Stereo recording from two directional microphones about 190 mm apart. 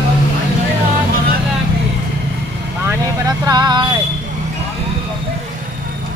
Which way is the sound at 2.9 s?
20° right (ahead or behind).